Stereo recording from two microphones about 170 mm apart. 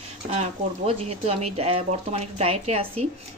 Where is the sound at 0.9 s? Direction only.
40° right (ahead or behind).